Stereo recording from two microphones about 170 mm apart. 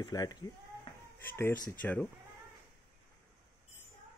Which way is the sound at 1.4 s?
15° left (ahead or behind).